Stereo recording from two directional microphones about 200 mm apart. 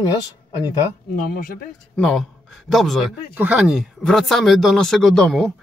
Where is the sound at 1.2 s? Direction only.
45° left (ahead or behind).